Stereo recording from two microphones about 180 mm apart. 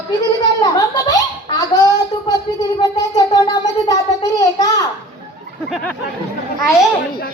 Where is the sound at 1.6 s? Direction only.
20° left (ahead or behind).